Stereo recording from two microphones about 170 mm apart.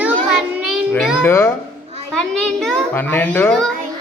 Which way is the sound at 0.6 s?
5° right (ahead or behind).